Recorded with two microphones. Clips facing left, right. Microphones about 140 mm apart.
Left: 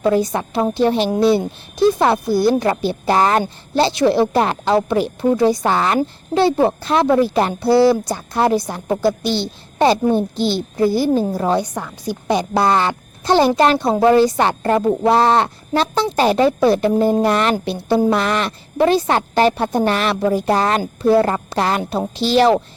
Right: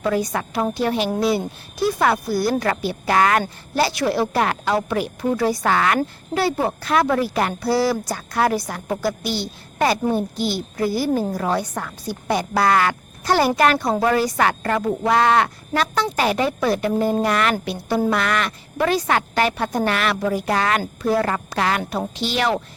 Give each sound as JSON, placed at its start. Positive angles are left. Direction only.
{"t": 0.0, "sound": "speech", "side_deg": 25}
{"t": 11.6, "sound": "a woman's voice", "side_deg": 15}